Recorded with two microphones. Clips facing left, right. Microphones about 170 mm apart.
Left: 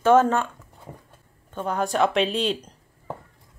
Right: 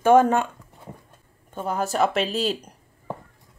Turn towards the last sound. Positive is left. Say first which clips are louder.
# right 1 dB
turn(degrees=-10)  # may be behind; listen again after turning